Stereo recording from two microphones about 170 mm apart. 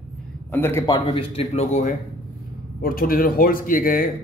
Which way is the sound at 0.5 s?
15° left (ahead or behind).